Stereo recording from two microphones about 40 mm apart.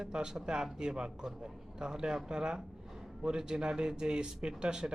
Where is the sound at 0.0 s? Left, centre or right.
Centre.